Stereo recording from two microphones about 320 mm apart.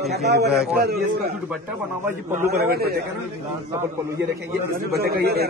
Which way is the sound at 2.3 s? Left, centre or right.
Right.